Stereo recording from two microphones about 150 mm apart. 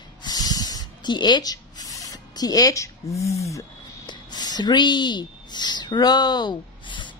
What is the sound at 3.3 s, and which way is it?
Speech, 20° left (ahead or behind).